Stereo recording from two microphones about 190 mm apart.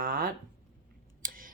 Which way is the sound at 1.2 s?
45° right (ahead or behind).